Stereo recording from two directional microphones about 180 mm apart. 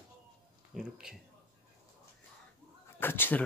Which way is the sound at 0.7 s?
5° right (ahead or behind).